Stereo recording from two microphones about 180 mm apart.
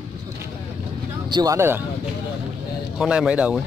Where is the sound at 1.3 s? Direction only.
20° right (ahead or behind).